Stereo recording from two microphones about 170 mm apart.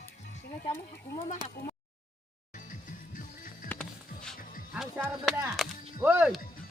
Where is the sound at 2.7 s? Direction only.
50° left (ahead or behind).